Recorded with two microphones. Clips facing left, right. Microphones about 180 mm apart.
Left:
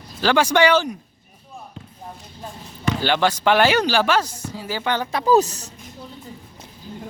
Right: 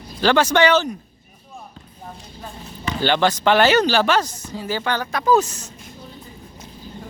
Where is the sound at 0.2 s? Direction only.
10° left (ahead or behind).